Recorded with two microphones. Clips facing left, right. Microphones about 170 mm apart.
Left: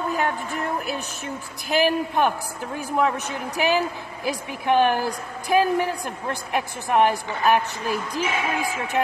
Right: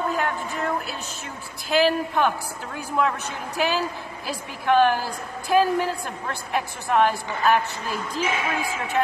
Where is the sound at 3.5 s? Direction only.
15° left (ahead or behind).